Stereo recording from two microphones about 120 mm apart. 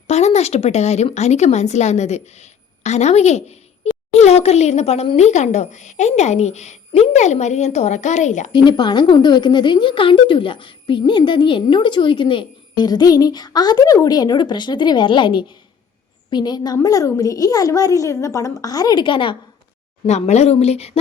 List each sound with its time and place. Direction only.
0.1 s a woman's voice: 65° left (ahead or behind); by 8.4 s 85° left
8.5 s a woman's voice: 40° left (ahead or behind)
20.1 s speech: 70° left (ahead or behind)